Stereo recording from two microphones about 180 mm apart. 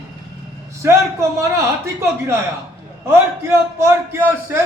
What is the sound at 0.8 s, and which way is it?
Speech, 15° right (ahead or behind).